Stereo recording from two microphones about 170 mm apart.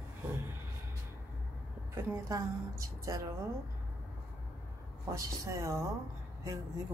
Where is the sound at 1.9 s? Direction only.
20° right (ahead or behind).